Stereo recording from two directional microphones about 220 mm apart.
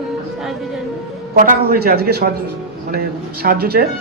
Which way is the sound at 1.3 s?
40° right (ahead or behind).